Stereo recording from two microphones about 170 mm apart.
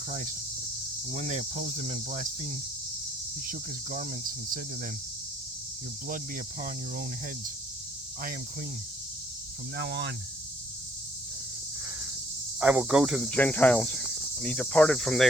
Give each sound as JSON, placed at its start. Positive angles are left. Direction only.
{"t": 0.1, "sound": "cricket", "side_deg": -55}
{"t": 1.1, "sound": "cricket", "side_deg": -45}
{"t": 3.4, "sound": "speech", "side_deg": -55}
{"t": 6.1, "sound": "speech", "side_deg": -55}
{"t": 9.7, "sound": "speech", "side_deg": -75}
{"t": 12.5, "sound": "speech", "side_deg": -5}
{"t": 13.3, "sound": "cricket", "side_deg": 10}